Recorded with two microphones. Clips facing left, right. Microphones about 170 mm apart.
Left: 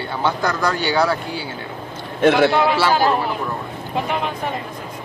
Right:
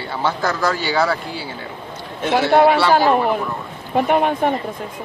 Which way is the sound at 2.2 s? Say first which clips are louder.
Left 5 dB; 60° left (ahead or behind).